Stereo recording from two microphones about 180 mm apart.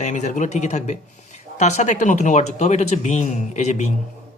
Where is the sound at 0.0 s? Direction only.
40° left (ahead or behind).